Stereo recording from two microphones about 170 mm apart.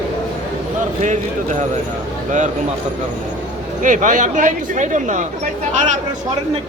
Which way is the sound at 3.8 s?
50° right (ahead or behind).